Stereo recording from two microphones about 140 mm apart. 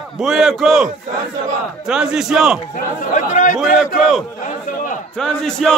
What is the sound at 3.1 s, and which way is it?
Speech, 65° left (ahead or behind).